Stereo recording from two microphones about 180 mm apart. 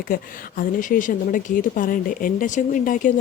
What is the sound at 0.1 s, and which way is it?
Speech, 50° left (ahead or behind).